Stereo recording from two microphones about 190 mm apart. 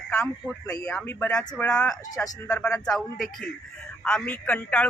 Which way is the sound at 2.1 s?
15° left (ahead or behind).